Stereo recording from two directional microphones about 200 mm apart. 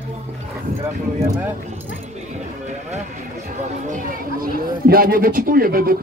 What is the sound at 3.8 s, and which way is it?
Speech, 40° right (ahead or behind).